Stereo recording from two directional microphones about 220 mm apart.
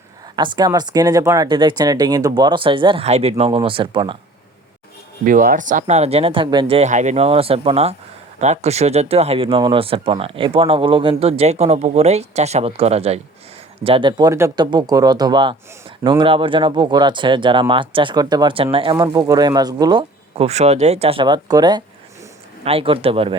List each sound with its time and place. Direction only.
0.3 s speech: 20° right (ahead or behind)
5.2 s speech: 40° right (ahead or behind)